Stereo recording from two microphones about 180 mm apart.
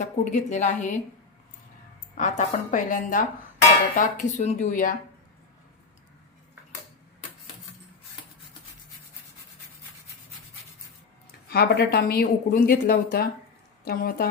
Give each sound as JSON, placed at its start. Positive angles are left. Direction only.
{"t": 0.0, "sound": "a woman's voice", "side_deg": 40}
{"t": 2.1, "sound": "a woman's voice", "side_deg": 40}
{"t": 11.4, "sound": "a woman's voice", "side_deg": 60}